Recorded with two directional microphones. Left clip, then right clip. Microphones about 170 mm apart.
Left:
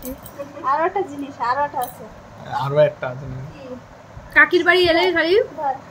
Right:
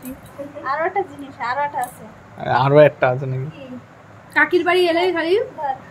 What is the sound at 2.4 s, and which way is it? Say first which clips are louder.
Speech: right 5 dB; 75° right (ahead or behind).